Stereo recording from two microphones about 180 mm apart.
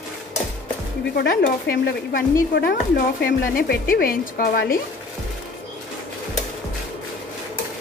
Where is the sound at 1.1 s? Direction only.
60° left (ahead or behind).